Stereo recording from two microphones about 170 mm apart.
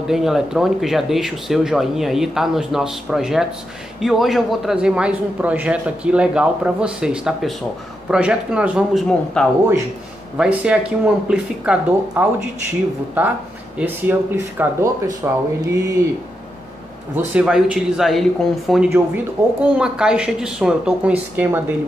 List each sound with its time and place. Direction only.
0.0 s a man's voice: centre (ahead or behind)
17.1 s a man's voice: 5° right (ahead or behind)
18.9 s speech: 10° right (ahead or behind)